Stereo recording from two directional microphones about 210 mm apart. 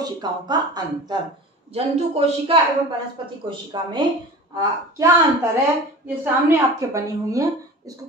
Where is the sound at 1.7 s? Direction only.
30° right (ahead or behind).